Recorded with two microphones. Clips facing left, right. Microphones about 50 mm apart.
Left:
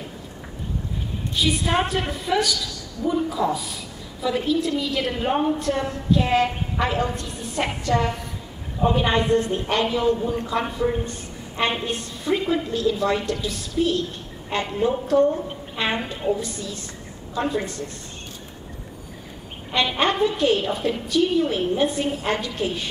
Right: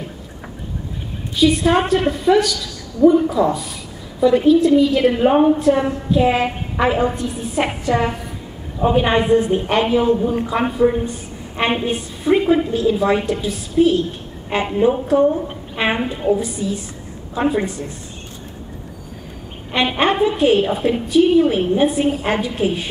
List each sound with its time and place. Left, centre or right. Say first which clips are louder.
1.7 s a woman's voice: right 7 dB; centre
19.7 s a woman's voice: right 4 dB; right